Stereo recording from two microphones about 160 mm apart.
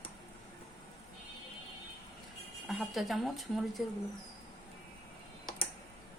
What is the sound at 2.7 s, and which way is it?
Speech, centre (ahead or behind).